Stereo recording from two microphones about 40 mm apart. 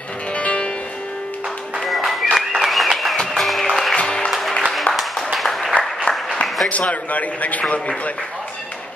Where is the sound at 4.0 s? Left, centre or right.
Left.